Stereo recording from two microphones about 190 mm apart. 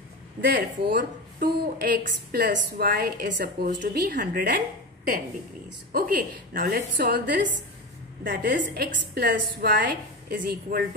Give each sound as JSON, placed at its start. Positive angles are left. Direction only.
{"t": 0.5, "sound": "a woman's voice", "side_deg": -50}
{"t": 5.9, "sound": "a woman's voice", "side_deg": -50}